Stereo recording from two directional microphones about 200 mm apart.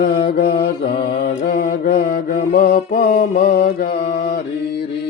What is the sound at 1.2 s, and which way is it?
Speech, 50° left (ahead or behind).